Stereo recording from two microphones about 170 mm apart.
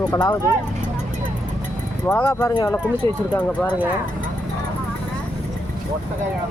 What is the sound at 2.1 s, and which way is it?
Speech, 10° left (ahead or behind).